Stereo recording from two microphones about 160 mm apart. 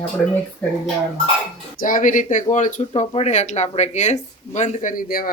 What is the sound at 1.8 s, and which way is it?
Speech, 55° left (ahead or behind).